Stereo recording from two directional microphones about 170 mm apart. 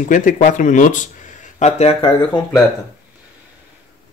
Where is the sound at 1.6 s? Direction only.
35° left (ahead or behind).